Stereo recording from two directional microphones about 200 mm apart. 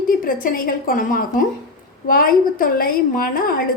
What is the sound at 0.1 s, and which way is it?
A woman's voice, 45° left (ahead or behind).